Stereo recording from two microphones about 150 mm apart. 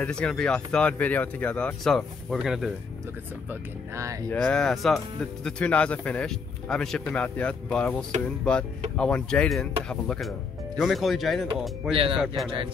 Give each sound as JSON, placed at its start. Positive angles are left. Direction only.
{"t": 0.0, "sound": "speech", "side_deg": 5}
{"t": 3.9, "sound": "speech", "side_deg": -20}
{"t": 4.3, "sound": "speech", "side_deg": 5}
{"t": 11.9, "sound": "speech", "side_deg": -35}